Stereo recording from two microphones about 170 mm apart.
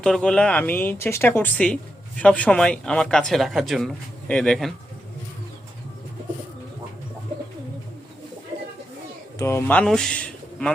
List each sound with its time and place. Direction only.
0.0 s speech: 5° left (ahead or behind)
9.4 s speech: 15° left (ahead or behind)